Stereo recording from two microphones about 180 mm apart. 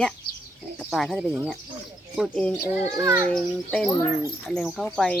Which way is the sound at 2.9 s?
15° right (ahead or behind).